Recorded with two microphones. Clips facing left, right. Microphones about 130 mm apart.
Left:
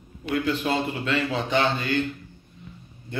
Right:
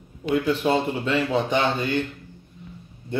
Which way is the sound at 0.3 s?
10° right (ahead or behind).